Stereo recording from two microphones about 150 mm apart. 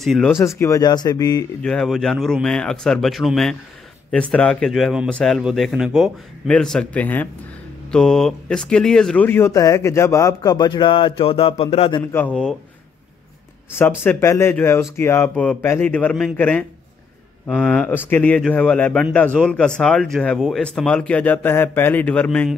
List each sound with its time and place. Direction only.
0.0 s speech: centre (ahead or behind)
0.6 s speech: 20° left (ahead or behind)
1.6 s speech: 5° left (ahead or behind); by 12.0 s 40° left (ahead or behind)
12.1 s speech: 10° left (ahead or behind)
13.7 s speech: 15° left (ahead or behind)